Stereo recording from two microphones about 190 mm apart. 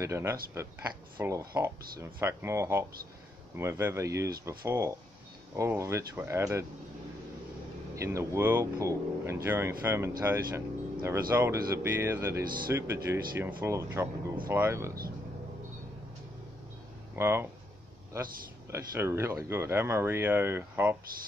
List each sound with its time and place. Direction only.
0.0 s speech: 15° right (ahead or behind)
7.9 s speech: 15° right (ahead or behind)
17.1 s speech: 10° right (ahead or behind)
18.7 s speech: 15° right (ahead or behind)